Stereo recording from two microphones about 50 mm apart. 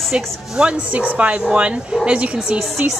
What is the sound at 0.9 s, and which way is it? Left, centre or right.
A woman's voice, right.